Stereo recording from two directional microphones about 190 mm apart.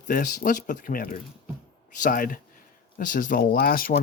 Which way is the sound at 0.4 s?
45° left (ahead or behind).